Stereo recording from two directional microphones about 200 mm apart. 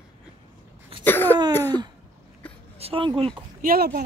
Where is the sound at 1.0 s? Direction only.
10° left (ahead or behind).